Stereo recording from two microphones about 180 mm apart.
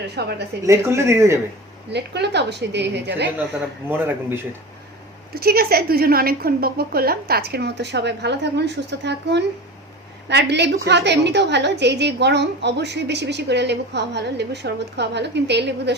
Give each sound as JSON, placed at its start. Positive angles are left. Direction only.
{"t": 0.2, "sound": "a woman's voice", "side_deg": -65}
{"t": 0.6, "sound": "speech", "side_deg": -15}
{"t": 1.9, "sound": "a woman's voice", "side_deg": -70}
{"t": 3.8, "sound": "speech", "side_deg": -10}
{"t": 5.3, "sound": "a woman's voice", "side_deg": -60}